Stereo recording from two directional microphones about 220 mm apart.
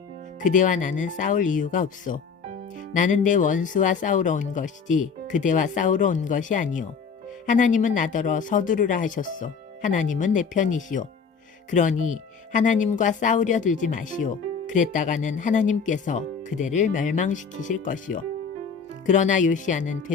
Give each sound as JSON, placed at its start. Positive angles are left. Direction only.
{"t": 0.3, "sound": "speech", "side_deg": 35}